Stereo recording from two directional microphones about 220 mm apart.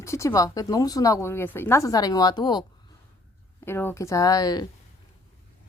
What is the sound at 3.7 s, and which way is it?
Speech, 10° left (ahead or behind).